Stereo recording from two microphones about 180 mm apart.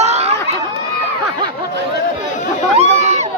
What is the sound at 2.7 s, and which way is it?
Crowd, 40° right (ahead or behind).